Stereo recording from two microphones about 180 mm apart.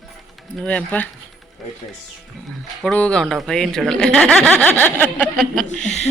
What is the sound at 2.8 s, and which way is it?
Speech, 5° left (ahead or behind).